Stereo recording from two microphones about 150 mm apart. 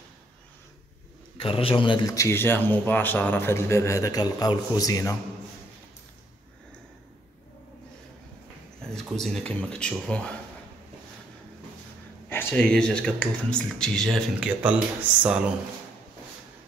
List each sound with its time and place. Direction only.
1.4 s a man's voice: 40° left (ahead or behind)
2.1 s a man's voice: 15° left (ahead or behind)
8.8 s speech: centre (ahead or behind)
12.3 s speech: 15° left (ahead or behind)
14.6 s speech: 10° right (ahead or behind)